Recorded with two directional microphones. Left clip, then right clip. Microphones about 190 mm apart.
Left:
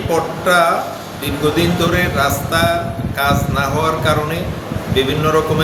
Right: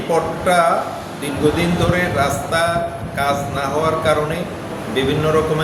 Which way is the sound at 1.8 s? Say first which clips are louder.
Even; 5° left (ahead or behind).